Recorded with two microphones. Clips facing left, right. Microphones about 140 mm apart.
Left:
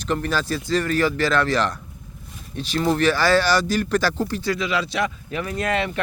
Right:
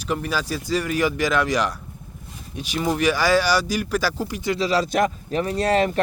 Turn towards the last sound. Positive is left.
turn(degrees=-35)  # may be behind; listen again after turning